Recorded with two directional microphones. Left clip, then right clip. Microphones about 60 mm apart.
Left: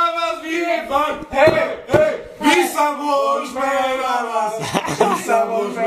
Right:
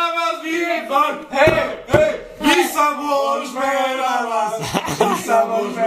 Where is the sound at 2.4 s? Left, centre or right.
Left.